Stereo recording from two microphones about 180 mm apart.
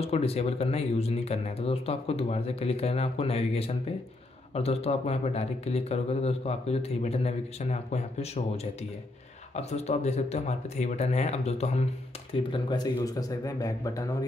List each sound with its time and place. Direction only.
0.0 s speech: 35° left (ahead or behind)
9.6 s speech: 35° left (ahead or behind)
12.4 s speech: 25° left (ahead or behind)